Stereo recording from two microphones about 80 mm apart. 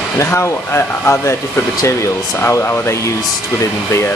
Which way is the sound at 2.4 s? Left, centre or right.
Left.